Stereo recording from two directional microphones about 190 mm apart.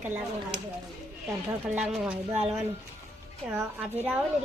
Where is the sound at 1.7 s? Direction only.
5° right (ahead or behind).